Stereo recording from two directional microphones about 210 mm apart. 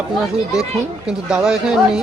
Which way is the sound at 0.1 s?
Centre (ahead or behind).